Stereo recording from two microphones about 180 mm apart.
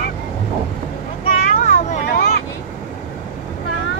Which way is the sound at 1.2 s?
50° left (ahead or behind).